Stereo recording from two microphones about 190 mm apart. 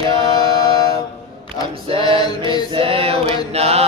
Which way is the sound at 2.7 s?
30° right (ahead or behind).